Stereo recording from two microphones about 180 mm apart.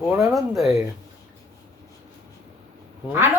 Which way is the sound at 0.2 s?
Centre (ahead or behind).